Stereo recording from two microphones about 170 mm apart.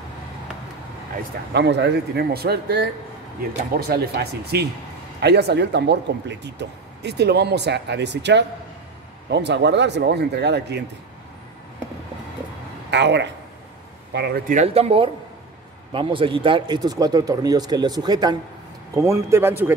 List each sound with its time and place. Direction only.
1.5 s speech: 90° right
12.9 s speech: 90° right
14.1 s speech: 75° right (ahead or behind)
14.5 s speech: 40° right (ahead or behind); by 19.7 s 15° right (ahead or behind)